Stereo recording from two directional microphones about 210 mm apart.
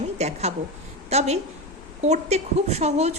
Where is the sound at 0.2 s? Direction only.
30° right (ahead or behind).